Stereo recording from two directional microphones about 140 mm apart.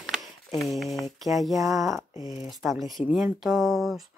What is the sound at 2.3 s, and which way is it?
Speech, centre (ahead or behind).